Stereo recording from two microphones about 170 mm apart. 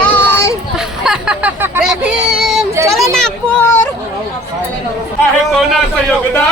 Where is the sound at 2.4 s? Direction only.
Centre (ahead or behind).